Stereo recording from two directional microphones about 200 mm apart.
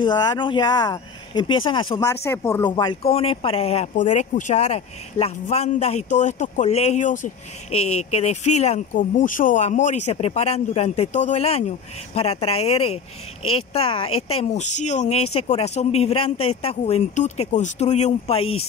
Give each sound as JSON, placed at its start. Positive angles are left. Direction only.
{"t": 0.0, "sound": "speech", "side_deg": 20}
{"t": 7.7, "sound": "speech", "side_deg": 90}
{"t": 8.0, "sound": "speech", "side_deg": 35}